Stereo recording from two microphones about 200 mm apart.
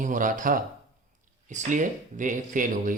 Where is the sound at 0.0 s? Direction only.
40° right (ahead or behind).